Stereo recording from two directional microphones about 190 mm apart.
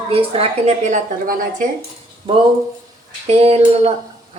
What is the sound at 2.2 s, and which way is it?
A woman's voice, 25° right (ahead or behind).